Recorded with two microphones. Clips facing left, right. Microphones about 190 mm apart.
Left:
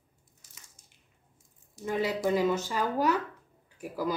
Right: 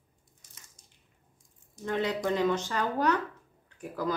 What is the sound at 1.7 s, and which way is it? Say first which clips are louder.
Speech: even; 5° left (ahead or behind).